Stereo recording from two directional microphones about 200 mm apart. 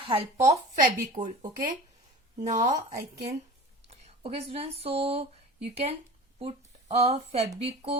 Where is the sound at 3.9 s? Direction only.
30° right (ahead or behind).